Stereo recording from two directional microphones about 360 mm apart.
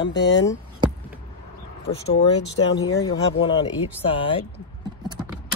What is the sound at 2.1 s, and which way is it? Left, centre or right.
Speech, left.